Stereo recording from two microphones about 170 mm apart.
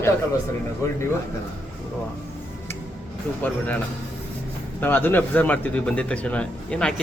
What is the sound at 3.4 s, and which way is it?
Speech, 10° left (ahead or behind).